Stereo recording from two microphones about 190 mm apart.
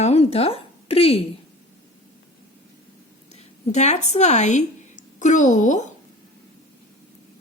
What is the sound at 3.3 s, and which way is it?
Speech, 35° left (ahead or behind).